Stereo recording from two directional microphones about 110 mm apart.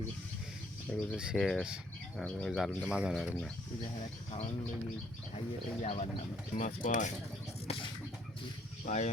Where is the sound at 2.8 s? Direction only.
10° right (ahead or behind).